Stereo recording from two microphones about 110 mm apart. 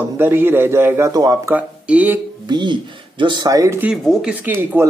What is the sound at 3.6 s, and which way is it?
A man's voice, 25° right (ahead or behind).